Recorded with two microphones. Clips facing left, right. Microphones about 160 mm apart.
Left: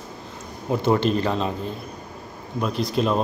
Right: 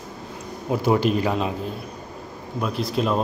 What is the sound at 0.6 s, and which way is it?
Speech, 5° right (ahead or behind).